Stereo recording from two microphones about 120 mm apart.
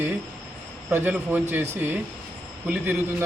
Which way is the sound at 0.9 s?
15° right (ahead or behind).